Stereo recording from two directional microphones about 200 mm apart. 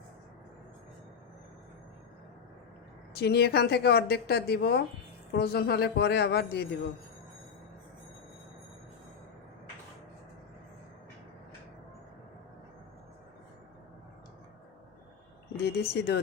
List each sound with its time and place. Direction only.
3.2 s a man's voice: 55° left (ahead or behind)
15.5 s speech: 55° left (ahead or behind)